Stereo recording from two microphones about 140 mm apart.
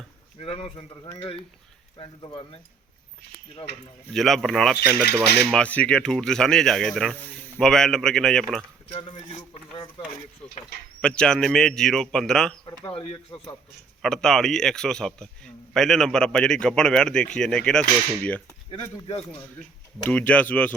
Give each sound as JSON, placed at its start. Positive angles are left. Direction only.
{"t": 0.3, "sound": "speech", "side_deg": 45}
{"t": 4.1, "sound": "a man's voice", "side_deg": 0}
{"t": 8.9, "sound": "speech", "side_deg": 35}
{"t": 10.4, "sound": "a man's voice", "side_deg": 10}
{"t": 12.8, "sound": "speech", "side_deg": 40}
{"t": 14.0, "sound": "a man's voice", "side_deg": 5}
{"t": 18.7, "sound": "speech", "side_deg": 40}
{"t": 20.1, "sound": "speech", "side_deg": 10}